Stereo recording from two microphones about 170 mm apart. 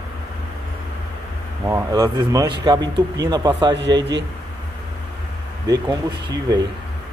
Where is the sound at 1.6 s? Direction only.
10° right (ahead or behind).